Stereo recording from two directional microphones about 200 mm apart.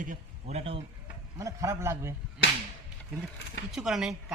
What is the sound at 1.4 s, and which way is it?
Speech, 15° right (ahead or behind).